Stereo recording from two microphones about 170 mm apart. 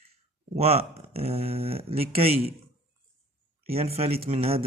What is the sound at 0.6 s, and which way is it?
Speech, 35° right (ahead or behind).